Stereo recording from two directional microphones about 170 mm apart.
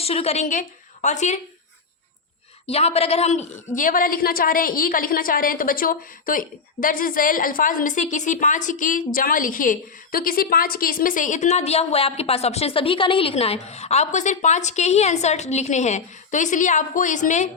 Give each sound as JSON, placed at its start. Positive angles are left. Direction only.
{"t": 0.0, "sound": "a woman's voice", "side_deg": 35}
{"t": 2.6, "sound": "a woman's voice", "side_deg": 35}